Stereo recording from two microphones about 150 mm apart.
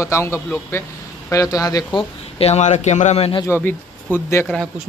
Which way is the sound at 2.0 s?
40° left (ahead or behind).